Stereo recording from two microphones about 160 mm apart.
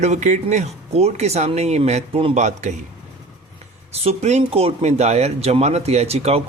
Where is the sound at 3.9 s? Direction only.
40° right (ahead or behind).